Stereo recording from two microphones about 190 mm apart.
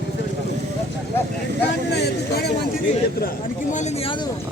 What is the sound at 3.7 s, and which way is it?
Speech, 35° left (ahead or behind).